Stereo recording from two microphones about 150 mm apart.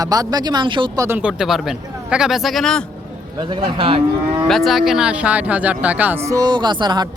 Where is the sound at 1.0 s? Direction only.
15° right (ahead or behind).